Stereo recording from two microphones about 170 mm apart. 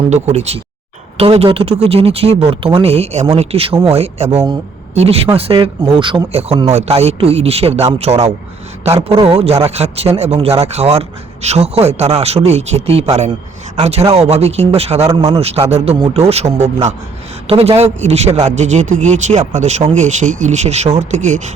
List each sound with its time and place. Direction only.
0.1 s a man's voice: 40° right (ahead or behind)
9.3 s a man's voice: 35° right (ahead or behind)
15.0 s speech: 20° right (ahead or behind)
15.4 s a man's voice: 35° right (ahead or behind)